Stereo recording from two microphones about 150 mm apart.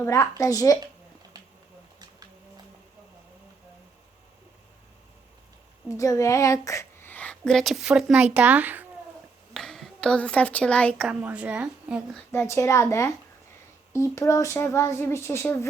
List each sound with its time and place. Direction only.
0.0 s speech: 20° left (ahead or behind)
6.0 s speech: 20° left (ahead or behind); by 8.9 s 10° right (ahead or behind)
9.5 s speech: centre (ahead or behind)
11.1 s a woman's voice: 10° right (ahead or behind)
12.3 s speech: 15° left (ahead or behind)